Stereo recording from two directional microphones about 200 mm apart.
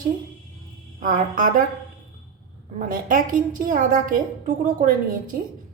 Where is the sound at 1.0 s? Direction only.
40° right (ahead or behind).